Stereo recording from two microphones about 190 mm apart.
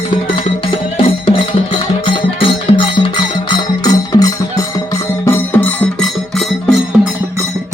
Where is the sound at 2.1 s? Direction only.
25° left (ahead or behind); by 6.8 s centre (ahead or behind).